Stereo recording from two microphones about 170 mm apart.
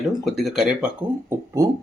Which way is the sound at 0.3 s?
Centre (ahead or behind).